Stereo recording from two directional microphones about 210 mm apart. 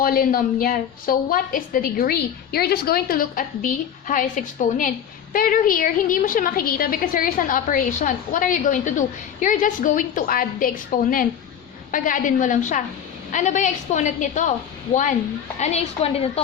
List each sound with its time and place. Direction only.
0.0 s a woman's voice: 45° left (ahead or behind)
15.5 s a woman's voice: 30° left (ahead or behind)